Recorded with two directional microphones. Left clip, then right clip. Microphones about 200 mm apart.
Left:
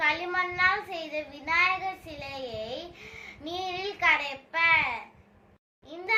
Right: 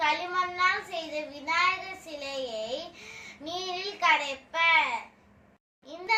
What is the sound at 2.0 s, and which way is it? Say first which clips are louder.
Child singing: right 3 dB; 15° left (ahead or behind).